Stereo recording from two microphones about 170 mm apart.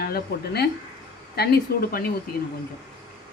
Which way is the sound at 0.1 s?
70° left (ahead or behind).